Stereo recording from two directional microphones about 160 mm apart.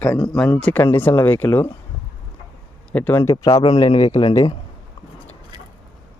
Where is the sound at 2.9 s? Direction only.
10° left (ahead or behind).